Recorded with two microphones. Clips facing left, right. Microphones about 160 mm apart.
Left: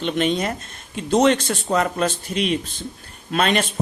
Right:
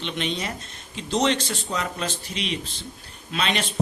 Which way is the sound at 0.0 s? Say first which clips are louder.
Left 8 dB; 50° left (ahead or behind).